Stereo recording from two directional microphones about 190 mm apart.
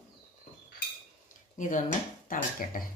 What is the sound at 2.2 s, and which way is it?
Speech, 45° left (ahead or behind).